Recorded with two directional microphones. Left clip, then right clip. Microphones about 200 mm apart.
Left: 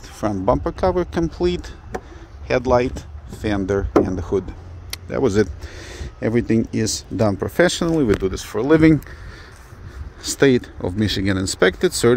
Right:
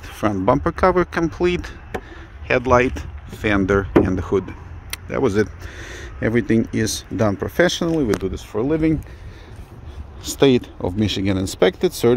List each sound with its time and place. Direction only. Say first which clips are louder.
0.0 s speech: right 2 dB; 5° right (ahead or behind); by 8.7 s 15° left (ahead or behind)
10.2 s speech: even; centre (ahead or behind)